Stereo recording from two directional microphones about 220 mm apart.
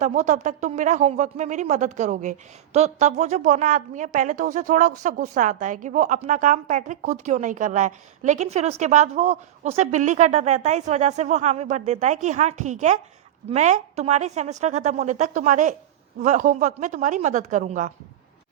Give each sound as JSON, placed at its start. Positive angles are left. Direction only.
{"t": 0.0, "sound": "a woman's voice", "side_deg": -35}